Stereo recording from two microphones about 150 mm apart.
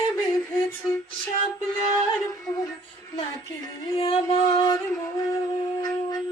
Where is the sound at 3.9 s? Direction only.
35° left (ahead or behind).